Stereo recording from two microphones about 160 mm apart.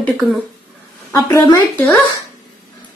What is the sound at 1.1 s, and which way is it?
Speech, 20° left (ahead or behind).